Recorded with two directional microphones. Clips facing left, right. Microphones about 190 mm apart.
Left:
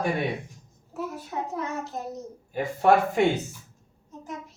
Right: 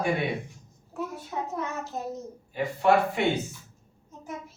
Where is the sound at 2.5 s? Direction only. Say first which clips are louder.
Left 2 dB; 45° left (ahead or behind).